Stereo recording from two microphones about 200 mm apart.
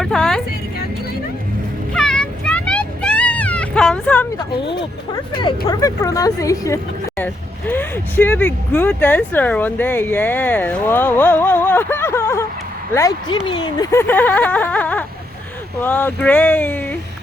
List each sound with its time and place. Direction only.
0.0 s music: centre (ahead or behind)
1.9 s vehicle: 5° left (ahead or behind)
4.6 s speech: 25° left (ahead or behind)
14.1 s a sound: 10° left (ahead or behind)
15.8 s speech: 10° left (ahead or behind)